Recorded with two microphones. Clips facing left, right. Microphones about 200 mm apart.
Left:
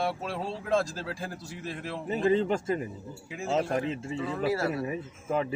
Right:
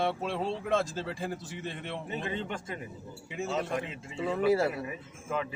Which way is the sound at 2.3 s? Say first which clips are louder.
Left 10 dB; 40° left (ahead or behind).